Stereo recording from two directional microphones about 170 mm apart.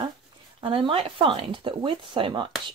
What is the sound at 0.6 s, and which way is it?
Speech, 30° right (ahead or behind).